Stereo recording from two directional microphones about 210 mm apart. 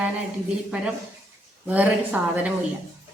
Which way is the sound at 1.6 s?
10° right (ahead or behind).